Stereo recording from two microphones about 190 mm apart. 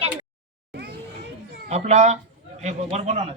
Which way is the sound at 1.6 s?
35° right (ahead or behind).